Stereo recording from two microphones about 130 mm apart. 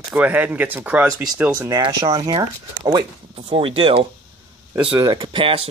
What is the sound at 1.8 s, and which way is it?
Speech, 35° right (ahead or behind).